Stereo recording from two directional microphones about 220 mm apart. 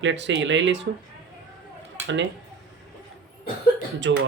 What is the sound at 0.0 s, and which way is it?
Speech, 55° right (ahead or behind).